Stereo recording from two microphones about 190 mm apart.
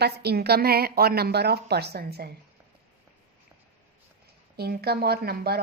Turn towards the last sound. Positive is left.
turn(degrees=-55)  # may be behind; listen again after turning